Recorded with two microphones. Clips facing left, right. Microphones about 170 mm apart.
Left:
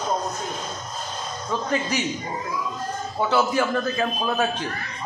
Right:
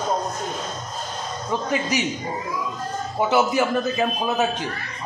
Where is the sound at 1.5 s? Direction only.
15° right (ahead or behind).